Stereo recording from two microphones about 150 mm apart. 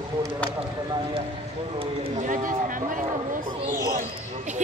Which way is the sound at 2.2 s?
60° right (ahead or behind).